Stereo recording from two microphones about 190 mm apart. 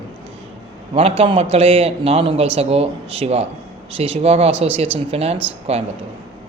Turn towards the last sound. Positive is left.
turn(degrees=-35)  # may be behind; listen again after turning